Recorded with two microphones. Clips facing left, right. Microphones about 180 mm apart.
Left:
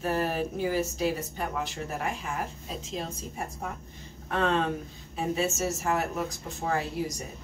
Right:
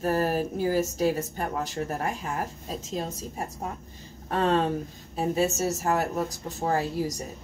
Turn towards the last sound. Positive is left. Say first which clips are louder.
# right 3 dB
turn(degrees=-40)  # may be behind; listen again after turning